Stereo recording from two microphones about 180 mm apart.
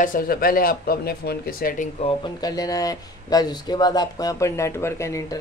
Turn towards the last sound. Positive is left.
turn(degrees=15)  # may be behind; listen again after turning